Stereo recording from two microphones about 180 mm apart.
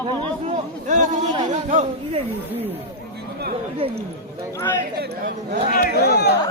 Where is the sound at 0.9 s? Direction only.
45° right (ahead or behind).